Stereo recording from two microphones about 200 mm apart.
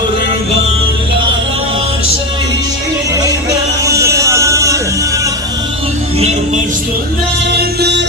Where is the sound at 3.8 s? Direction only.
15° right (ahead or behind).